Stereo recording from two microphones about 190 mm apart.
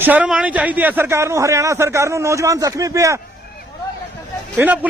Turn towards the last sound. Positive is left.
turn(degrees=-10)  # may be behind; listen again after turning